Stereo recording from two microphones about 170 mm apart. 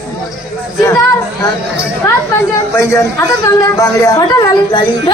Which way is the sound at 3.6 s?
20° left (ahead or behind).